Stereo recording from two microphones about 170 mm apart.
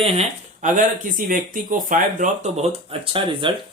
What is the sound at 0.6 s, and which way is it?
Speech, 50° right (ahead or behind).